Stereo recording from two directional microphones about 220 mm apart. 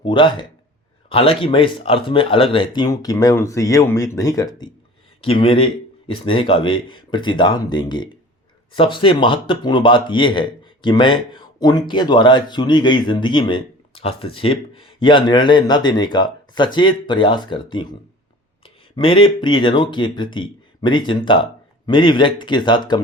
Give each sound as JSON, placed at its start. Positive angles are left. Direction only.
{"t": 0.0, "sound": "speech", "side_deg": 20}